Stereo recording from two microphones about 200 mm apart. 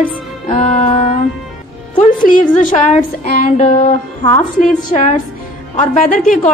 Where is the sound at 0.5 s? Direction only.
35° left (ahead or behind).